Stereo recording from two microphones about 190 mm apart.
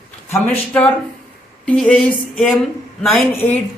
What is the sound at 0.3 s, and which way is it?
Speech, 10° left (ahead or behind).